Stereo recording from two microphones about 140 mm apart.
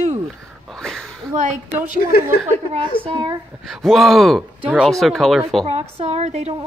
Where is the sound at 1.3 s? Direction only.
60° right (ahead or behind).